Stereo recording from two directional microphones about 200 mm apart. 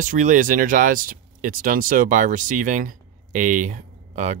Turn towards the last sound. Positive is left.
turn(degrees=-40)  # may be behind; listen again after turning